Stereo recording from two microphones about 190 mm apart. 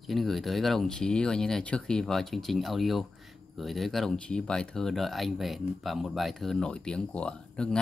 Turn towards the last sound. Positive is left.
turn(degrees=5)  # may be behind; listen again after turning